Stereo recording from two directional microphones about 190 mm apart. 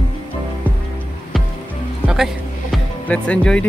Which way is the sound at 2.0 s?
Centre (ahead or behind).